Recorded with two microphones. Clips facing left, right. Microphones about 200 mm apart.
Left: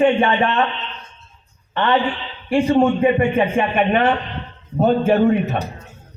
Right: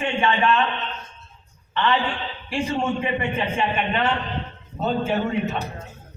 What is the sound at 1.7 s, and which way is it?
A man's voice, 50° left (ahead or behind).